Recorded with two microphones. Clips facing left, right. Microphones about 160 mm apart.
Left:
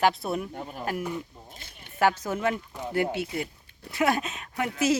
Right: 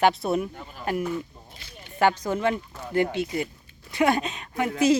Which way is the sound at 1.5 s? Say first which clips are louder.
Right 2 dB; 50° left (ahead or behind).